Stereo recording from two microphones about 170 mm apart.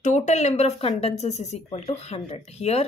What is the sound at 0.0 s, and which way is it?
Speech, 45° left (ahead or behind).